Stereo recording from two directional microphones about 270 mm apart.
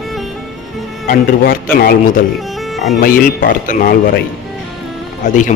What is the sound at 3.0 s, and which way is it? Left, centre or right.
Speech, left.